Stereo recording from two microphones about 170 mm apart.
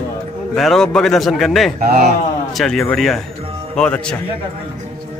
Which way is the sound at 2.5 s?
Centre (ahead or behind).